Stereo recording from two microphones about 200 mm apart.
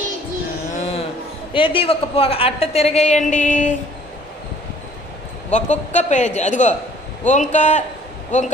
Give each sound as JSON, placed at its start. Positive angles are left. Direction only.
{"t": 1.5, "sound": "a woman's voice", "side_deg": 25}
{"t": 5.5, "sound": "a woman's voice", "side_deg": 35}